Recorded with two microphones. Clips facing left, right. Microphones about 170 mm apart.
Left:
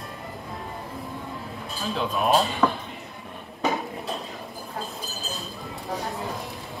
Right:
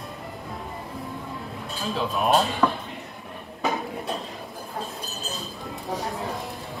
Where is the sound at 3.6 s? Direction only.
Centre (ahead or behind).